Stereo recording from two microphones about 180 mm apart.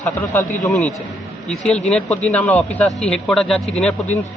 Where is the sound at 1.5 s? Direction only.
5° left (ahead or behind).